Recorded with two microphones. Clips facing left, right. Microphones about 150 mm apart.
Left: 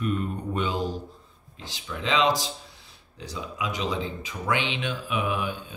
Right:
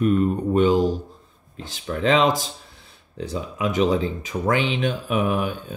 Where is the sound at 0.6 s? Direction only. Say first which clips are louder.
Right 10 dB; 45° right (ahead or behind).